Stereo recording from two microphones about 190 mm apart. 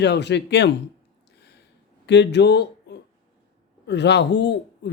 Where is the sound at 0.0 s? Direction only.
65° left (ahead or behind).